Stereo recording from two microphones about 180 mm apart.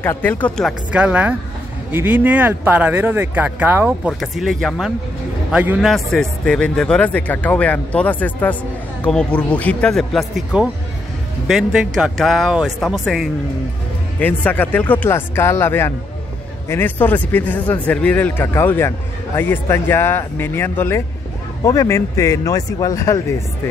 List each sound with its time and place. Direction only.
0.0 s a man's voice: 10° left (ahead or behind)
14.2 s a man's voice: 10° left (ahead or behind)